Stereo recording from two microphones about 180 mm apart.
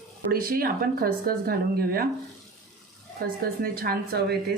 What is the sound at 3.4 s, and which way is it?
Speech, 55° right (ahead or behind).